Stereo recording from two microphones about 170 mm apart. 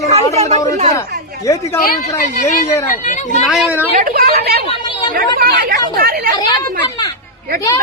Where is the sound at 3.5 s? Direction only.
Centre (ahead or behind).